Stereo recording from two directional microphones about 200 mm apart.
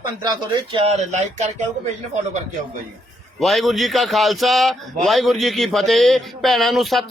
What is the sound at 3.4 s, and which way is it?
A man's voice, centre (ahead or behind).